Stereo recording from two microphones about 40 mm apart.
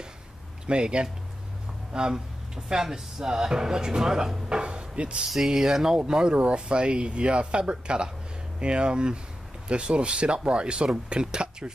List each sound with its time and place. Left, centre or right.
0.7 s speech: right
5.5 s speech: centre